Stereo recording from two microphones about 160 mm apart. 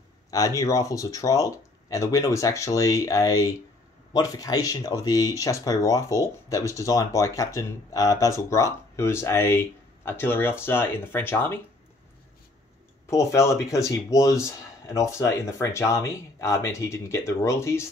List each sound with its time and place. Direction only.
0.3 s speech: 20° left (ahead or behind)
13.1 s speech: 20° left (ahead or behind)